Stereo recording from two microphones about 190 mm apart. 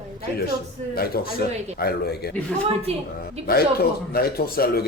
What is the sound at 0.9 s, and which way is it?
Speech, 55° left (ahead or behind).